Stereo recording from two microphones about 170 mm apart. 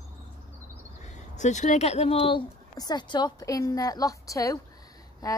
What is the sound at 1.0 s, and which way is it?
A woman's voice, 45° left (ahead or behind).